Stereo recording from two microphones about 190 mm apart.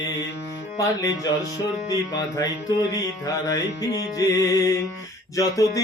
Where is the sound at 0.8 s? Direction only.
20° left (ahead or behind).